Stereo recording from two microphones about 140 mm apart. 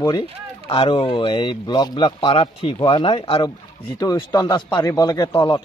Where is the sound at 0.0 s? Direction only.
25° left (ahead or behind).